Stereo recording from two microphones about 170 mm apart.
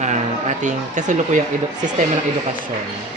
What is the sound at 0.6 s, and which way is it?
Speech, 45° right (ahead or behind).